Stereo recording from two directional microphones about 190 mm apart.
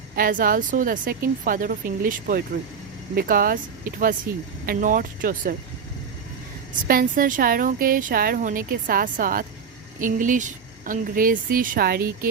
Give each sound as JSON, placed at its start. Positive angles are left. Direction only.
{"t": 0.2, "sound": "a woman's voice", "side_deg": -45}
{"t": 6.8, "sound": "a woman's voice", "side_deg": -50}